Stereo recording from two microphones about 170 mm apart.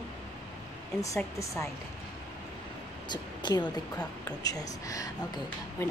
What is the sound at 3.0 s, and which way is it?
A woman's voice, 25° left (ahead or behind).